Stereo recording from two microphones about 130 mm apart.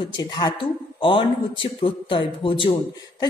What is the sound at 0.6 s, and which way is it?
Speech, 40° left (ahead or behind).